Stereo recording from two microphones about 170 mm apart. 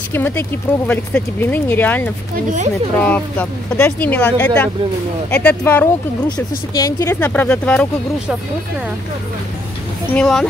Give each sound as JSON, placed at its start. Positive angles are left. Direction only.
{"t": 0.1, "sound": "speech", "side_deg": 10}
{"t": 2.3, "sound": "speech", "side_deg": -45}
{"t": 3.0, "sound": "speech", "side_deg": 10}
{"t": 7.2, "sound": "speech", "side_deg": 10}
{"t": 10.1, "sound": "speech", "side_deg": 5}